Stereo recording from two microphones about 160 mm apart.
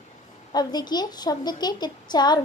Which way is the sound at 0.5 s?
25° left (ahead or behind).